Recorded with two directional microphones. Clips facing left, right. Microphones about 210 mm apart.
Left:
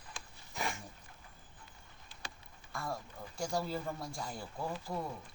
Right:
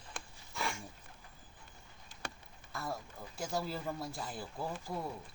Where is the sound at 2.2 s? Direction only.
60° right (ahead or behind).